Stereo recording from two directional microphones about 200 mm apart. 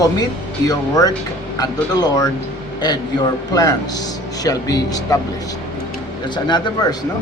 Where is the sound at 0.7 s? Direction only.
20° left (ahead or behind).